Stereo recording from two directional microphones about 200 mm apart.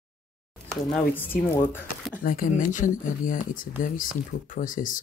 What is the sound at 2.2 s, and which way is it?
Speech, 45° left (ahead or behind).